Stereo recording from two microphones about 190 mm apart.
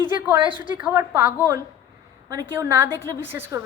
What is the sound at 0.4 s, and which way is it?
Speech, 25° left (ahead or behind).